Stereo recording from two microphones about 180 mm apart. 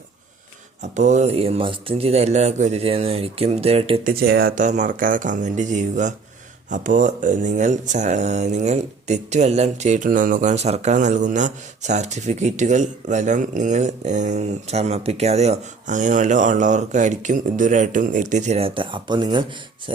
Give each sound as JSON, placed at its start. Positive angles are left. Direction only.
{"t": 0.8, "sound": "speech", "side_deg": -40}
{"t": 4.0, "sound": "speech", "side_deg": -60}